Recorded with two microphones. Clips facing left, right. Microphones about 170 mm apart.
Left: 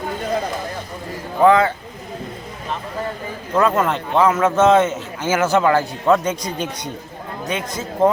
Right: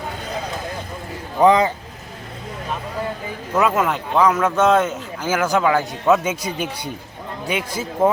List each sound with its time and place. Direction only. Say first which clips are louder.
1.4 s a man's voice: left 1 dB; 15° right (ahead or behind)
3.5 s a man's voice: left 1 dB; 5° right (ahead or behind)